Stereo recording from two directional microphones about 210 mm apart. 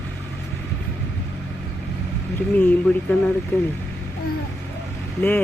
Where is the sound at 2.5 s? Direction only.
5° left (ahead or behind).